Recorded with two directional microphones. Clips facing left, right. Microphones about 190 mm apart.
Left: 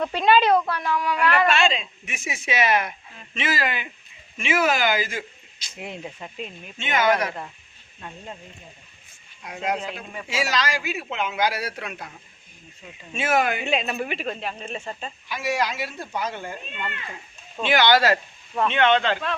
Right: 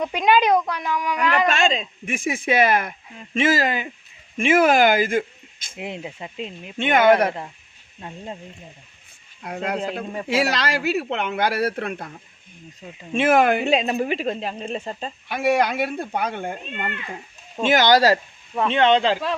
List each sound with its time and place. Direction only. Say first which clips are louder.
0.0 s speech: right 1 dB; 15° right (ahead or behind)
1.5 s speech: right 1 dB; 40° right (ahead or behind)
4.4 s speech: right 6 dB; 50° right (ahead or behind)
5.7 s speech: right 3 dB; 15° right (ahead or behind)
6.7 s speech: right 6 dB; 55° right (ahead or behind)
8.0 s speech: right 4 dB; 25° right (ahead or behind)
9.4 s speech: even; 55° right (ahead or behind)
9.7 s a woman's voice: right 5 dB; 35° right (ahead or behind)
10.2 s speech: right 3 dB; 60° right (ahead or behind)
13.1 s speech: right 6 dB; 55° right (ahead or behind)
13.7 s a woman's voice: right 5 dB; 35° right (ahead or behind)
15.3 s speech: right 6 dB; 55° right (ahead or behind)
17.6 s a woman's voice: right 3 dB; 45° right (ahead or behind)